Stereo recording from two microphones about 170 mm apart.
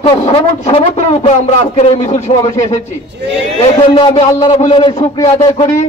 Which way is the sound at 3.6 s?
35° left (ahead or behind).